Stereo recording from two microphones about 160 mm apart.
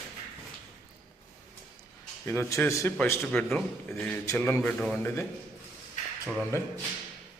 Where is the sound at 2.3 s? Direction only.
15° left (ahead or behind).